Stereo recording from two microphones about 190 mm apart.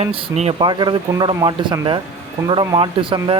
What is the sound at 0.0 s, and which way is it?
Speech, 35° right (ahead or behind).